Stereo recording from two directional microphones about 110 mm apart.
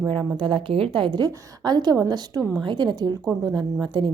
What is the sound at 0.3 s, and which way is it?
A woman's voice, 50° right (ahead or behind).